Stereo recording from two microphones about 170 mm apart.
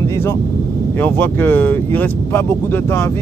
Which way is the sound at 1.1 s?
10° left (ahead or behind).